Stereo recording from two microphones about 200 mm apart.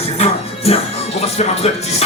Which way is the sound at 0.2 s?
30° left (ahead or behind).